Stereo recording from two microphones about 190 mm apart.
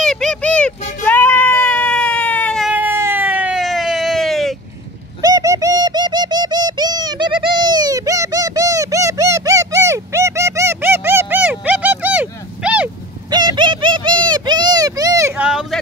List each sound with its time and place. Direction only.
0.0 s sheep: 5° left (ahead or behind)
2.7 s a sound: 10° right (ahead or behind)
5.2 s bird: 15° right (ahead or behind)
13.3 s bird: 25° right (ahead or behind); by 15.8 s 5° right (ahead or behind)